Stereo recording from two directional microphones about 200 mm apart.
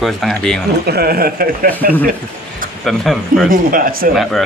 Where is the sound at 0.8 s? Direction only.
50° right (ahead or behind).